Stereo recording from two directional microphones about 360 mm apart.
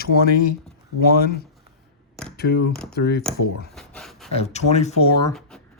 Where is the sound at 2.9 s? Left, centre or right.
Left.